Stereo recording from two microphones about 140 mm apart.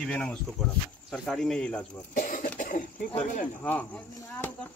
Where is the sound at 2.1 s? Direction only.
75° left (ahead or behind).